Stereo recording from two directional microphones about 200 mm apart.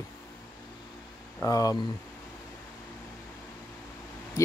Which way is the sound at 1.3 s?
15° left (ahead or behind).